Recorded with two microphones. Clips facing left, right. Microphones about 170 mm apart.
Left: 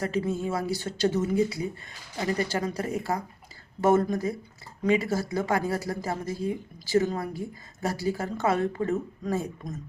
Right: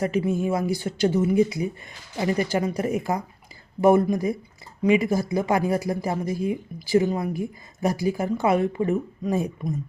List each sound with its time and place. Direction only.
0.0 s speech: 15° right (ahead or behind)